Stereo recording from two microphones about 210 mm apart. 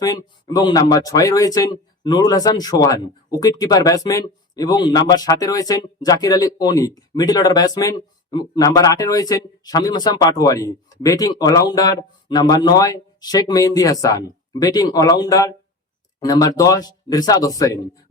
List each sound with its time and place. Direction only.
0.0 s speech: 20° left (ahead or behind)